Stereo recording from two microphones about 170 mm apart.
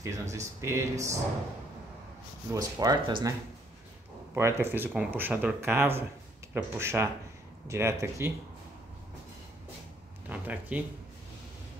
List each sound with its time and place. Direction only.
0.0 s speech: 15° right (ahead or behind)
2.5 s speech: 20° right (ahead or behind)
4.4 s speech: 15° right (ahead or behind)
10.3 s speech: 10° right (ahead or behind)